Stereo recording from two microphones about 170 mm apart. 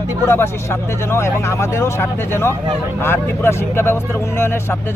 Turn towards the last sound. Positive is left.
turn(degrees=15)  # may be behind; listen again after turning